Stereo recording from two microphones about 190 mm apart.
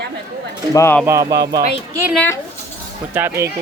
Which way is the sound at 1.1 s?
15° right (ahead or behind).